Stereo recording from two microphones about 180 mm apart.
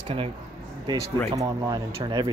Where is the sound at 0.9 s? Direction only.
20° right (ahead or behind).